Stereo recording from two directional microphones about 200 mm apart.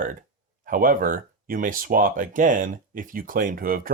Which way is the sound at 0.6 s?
45° right (ahead or behind).